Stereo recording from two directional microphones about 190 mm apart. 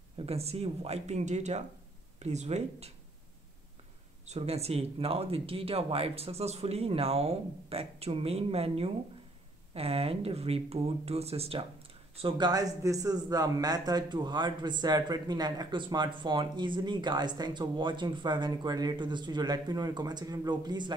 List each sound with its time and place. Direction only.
0.2 s speech: 30° right (ahead or behind)
4.3 s a man's voice: 35° right (ahead or behind)